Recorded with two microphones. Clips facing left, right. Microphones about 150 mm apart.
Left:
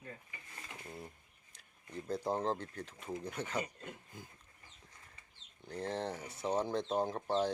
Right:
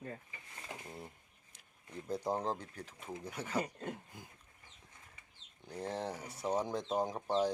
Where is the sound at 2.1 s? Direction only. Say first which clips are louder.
Left 1 dB; 15° right (ahead or behind).